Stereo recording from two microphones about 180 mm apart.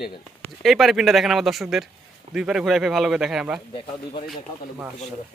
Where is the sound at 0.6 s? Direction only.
Centre (ahead or behind).